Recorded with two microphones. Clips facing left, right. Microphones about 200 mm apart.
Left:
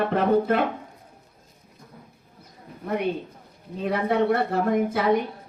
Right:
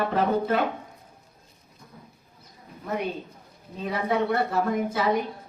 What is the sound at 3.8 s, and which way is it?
A woman's voice, 55° left (ahead or behind).